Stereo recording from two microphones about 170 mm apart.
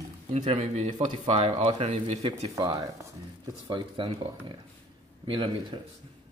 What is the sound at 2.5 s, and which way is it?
A man's voice, 25° right (ahead or behind).